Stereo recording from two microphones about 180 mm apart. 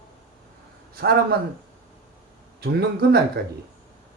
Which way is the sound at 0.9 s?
55° right (ahead or behind).